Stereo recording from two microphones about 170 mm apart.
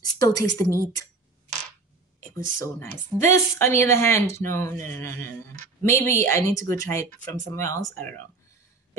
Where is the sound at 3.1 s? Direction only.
15° left (ahead or behind).